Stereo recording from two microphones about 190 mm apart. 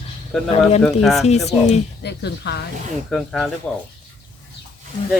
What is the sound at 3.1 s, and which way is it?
Speech, centre (ahead or behind).